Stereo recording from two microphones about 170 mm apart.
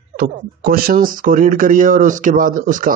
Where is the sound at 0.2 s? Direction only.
60° right (ahead or behind).